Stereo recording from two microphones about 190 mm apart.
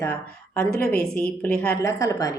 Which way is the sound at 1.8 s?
20° left (ahead or behind).